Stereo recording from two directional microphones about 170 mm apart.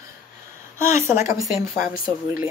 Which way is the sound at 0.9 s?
45° left (ahead or behind).